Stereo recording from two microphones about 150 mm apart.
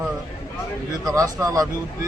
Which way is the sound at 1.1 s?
20° right (ahead or behind).